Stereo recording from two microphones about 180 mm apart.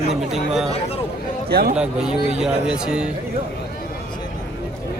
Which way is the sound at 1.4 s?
60° right (ahead or behind).